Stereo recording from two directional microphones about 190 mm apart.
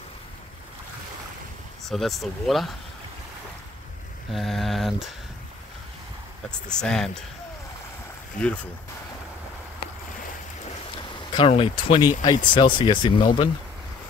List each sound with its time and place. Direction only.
1.9 s speech: centre (ahead or behind)
4.3 s speech: centre (ahead or behind)
6.7 s speech: 5° left (ahead or behind)
11.3 s speech: 30° left (ahead or behind)